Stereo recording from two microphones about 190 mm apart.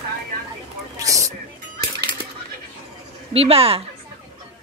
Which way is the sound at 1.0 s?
15° right (ahead or behind).